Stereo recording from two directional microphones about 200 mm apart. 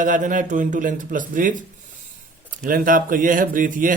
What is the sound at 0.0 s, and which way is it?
Speech, 40° right (ahead or behind).